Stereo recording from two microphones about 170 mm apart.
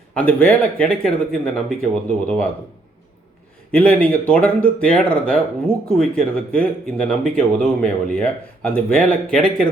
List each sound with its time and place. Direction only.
0.1 s speech: 5° left (ahead or behind)
3.7 s speech: 10° left (ahead or behind)